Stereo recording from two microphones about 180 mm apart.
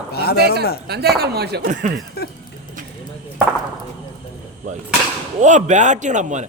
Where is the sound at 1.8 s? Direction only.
45° right (ahead or behind).